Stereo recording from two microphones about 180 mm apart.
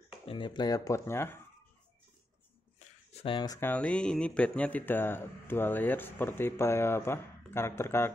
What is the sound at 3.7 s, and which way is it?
Speech, 5° left (ahead or behind).